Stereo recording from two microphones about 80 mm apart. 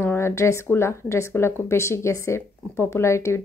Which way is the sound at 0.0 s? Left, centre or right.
Left.